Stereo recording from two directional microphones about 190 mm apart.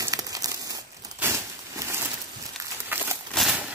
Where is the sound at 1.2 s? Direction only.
15° right (ahead or behind).